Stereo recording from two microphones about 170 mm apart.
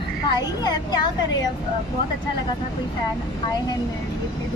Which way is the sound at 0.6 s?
25° left (ahead or behind).